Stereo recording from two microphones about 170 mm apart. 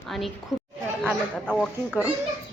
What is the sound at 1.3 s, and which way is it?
Speech, 5° left (ahead or behind).